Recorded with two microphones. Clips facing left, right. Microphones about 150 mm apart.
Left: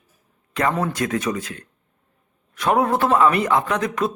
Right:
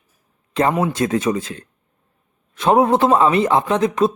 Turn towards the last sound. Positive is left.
turn(degrees=-25)  # may be behind; listen again after turning